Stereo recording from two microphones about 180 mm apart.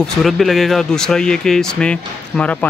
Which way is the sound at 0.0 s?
Centre (ahead or behind).